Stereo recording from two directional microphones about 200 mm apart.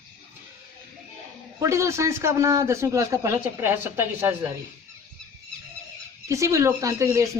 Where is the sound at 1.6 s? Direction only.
15° right (ahead or behind).